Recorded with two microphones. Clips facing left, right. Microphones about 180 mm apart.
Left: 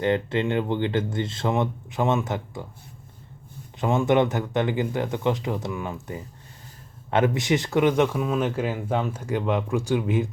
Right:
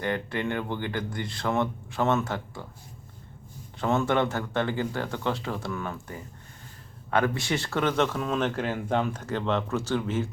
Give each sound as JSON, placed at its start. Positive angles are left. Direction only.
{"t": 0.0, "sound": "speech", "side_deg": 20}
{"t": 3.8, "sound": "speech", "side_deg": 15}